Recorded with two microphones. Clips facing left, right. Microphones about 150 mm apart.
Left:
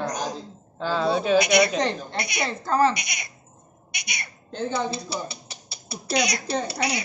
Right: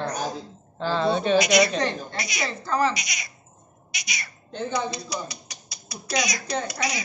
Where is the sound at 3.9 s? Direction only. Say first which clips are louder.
Even; 55° left (ahead or behind).